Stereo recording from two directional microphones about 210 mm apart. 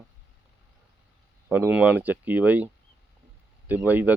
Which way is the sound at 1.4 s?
5° right (ahead or behind).